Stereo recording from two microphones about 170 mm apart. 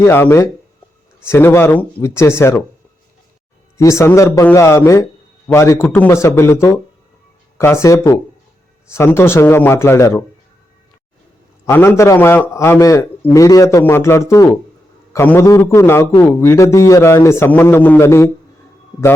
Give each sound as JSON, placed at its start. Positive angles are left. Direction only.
{"t": 0.0, "sound": "a man's voice", "side_deg": 15}
{"t": 3.8, "sound": "a man's voice", "side_deg": 15}
{"t": 11.6, "sound": "a man's voice", "side_deg": 15}